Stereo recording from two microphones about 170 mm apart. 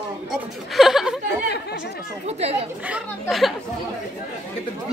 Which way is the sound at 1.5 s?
80° left.